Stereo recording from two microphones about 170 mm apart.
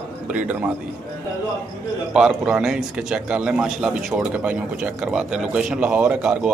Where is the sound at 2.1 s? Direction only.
5° right (ahead or behind).